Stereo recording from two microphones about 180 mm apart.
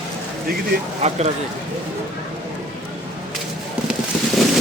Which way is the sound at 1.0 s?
35° right (ahead or behind).